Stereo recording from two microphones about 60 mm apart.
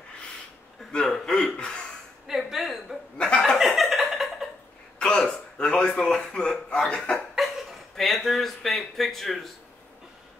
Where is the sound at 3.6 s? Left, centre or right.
Centre.